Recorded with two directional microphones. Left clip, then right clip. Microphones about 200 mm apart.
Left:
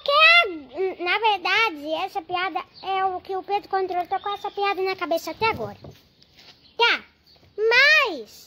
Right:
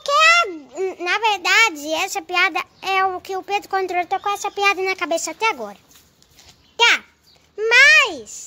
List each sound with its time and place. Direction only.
0.0 s a child's voice: 5° right (ahead or behind); by 4.7 s 25° right (ahead or behind)
4.7 s speech: 15° right (ahead or behind)
6.8 s a sound: 10° right (ahead or behind)